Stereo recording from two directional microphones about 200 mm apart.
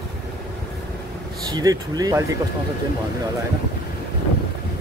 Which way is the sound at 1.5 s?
20° right (ahead or behind).